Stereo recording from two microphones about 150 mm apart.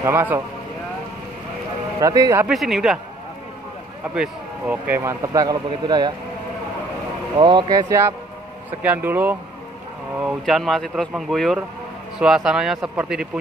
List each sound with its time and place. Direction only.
0.0 s speech: 15° right (ahead or behind)
2.0 s speech: 20° right (ahead or behind)
2.4 s speech: centre (ahead or behind)
4.1 s speech: 10° right (ahead or behind); by 6.1 s 30° right (ahead or behind)
7.3 s speech: 30° right (ahead or behind); by 9.4 s 15° right (ahead or behind)
10.4 s speech: centre (ahead or behind)